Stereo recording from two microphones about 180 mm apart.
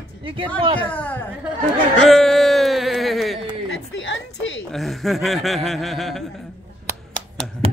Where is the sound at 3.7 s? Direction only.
90° left.